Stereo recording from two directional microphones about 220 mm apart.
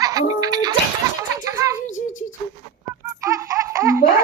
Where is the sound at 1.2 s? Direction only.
15° right (ahead or behind).